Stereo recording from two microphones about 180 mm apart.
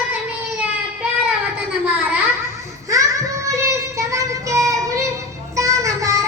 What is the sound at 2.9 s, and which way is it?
Child singing, 20° right (ahead or behind).